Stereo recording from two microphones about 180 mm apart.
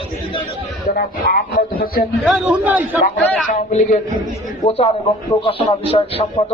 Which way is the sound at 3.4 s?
45° left (ahead or behind).